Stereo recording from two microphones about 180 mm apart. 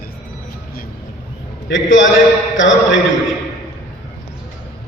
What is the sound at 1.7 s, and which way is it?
A man's voice, 90° left.